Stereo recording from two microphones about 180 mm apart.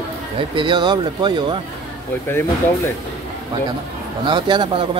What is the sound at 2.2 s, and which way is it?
Speech, 10° left (ahead or behind).